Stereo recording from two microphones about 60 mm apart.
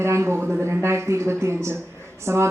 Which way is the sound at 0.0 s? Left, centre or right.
Right.